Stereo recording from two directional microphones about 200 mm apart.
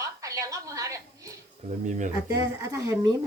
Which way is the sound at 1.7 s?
40° right (ahead or behind).